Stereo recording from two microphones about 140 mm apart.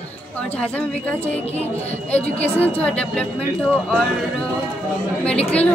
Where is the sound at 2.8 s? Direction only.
5° left (ahead or behind).